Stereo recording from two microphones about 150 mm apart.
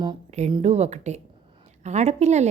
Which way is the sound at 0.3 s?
50° right (ahead or behind).